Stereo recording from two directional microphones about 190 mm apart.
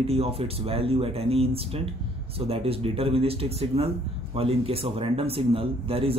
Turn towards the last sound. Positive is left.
turn(degrees=-30)  # may be behind; listen again after turning